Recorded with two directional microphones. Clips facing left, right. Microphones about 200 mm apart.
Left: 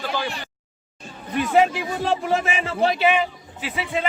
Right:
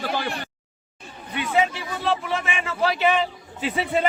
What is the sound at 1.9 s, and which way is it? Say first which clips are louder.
Music: left 3 dB; 45° left (ahead or behind).